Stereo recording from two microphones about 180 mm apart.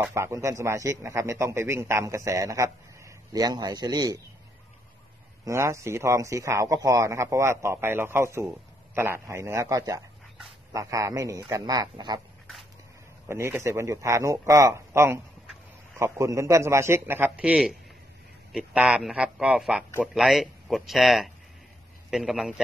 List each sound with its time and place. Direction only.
0.0 s a man's voice: 15° right (ahead or behind)
5.4 s a man's voice: 15° right (ahead or behind)
13.3 s a man's voice: 15° right (ahead or behind)